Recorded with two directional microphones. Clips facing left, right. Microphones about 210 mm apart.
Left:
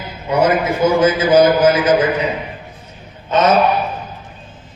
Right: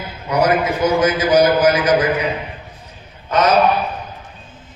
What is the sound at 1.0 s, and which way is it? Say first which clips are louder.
A man's voice: left 3 dB; 25° left (ahead or behind).